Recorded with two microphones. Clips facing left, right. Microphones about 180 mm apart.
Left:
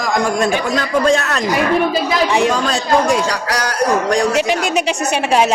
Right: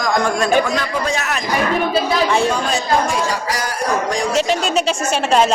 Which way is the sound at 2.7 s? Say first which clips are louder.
Left 3 dB; 75° left (ahead or behind).